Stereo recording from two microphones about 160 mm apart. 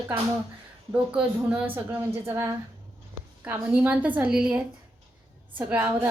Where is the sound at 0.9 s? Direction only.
5° right (ahead or behind).